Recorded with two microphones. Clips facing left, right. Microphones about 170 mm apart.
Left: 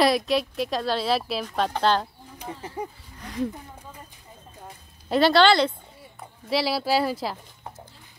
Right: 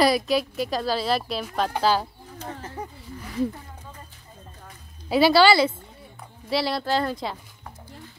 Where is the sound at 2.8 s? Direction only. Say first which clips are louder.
Left 4 dB; 10° left (ahead or behind).